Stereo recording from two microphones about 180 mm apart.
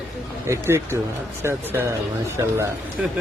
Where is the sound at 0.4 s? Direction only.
15° right (ahead or behind).